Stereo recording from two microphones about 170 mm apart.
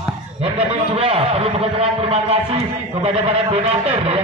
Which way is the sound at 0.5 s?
35° right (ahead or behind).